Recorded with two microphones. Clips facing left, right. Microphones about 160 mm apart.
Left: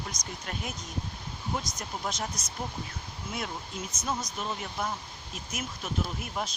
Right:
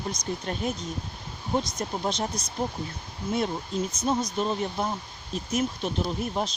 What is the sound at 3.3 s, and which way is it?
Speech, 30° right (ahead or behind).